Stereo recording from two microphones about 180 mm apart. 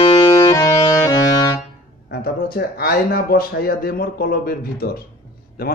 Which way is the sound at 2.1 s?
60° left (ahead or behind).